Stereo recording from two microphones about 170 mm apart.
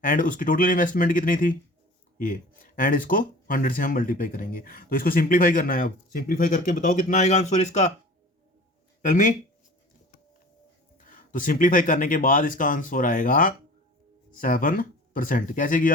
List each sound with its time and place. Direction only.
0.0 s speech: 50° left (ahead or behind)
9.0 s speech: 50° left (ahead or behind)
10.9 s speech: 50° left (ahead or behind)